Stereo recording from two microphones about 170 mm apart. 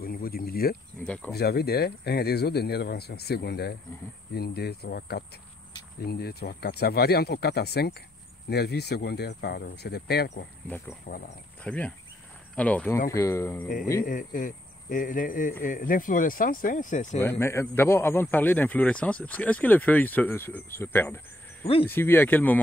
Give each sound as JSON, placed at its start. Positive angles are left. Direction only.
{"t": 0.0, "sound": "speech", "side_deg": 60}
{"t": 1.0, "sound": "a man's voice", "side_deg": 5}
{"t": 1.3, "sound": "speech", "side_deg": 70}
{"t": 11.1, "sound": "speech", "side_deg": 50}
{"t": 11.6, "sound": "a man's voice", "side_deg": 5}
{"t": 14.0, "sound": "speech", "side_deg": 50}
{"t": 17.2, "sound": "a man's voice", "side_deg": 15}